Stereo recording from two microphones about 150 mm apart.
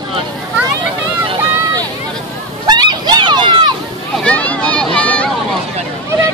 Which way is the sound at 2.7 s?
30° right (ahead or behind).